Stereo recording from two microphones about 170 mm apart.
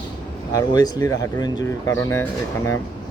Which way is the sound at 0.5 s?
20° left (ahead or behind).